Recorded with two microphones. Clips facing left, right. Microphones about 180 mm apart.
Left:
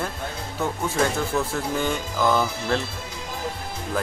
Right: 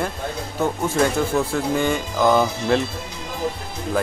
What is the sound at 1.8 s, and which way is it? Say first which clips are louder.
Music: right 3 dB; 15° right (ahead or behind).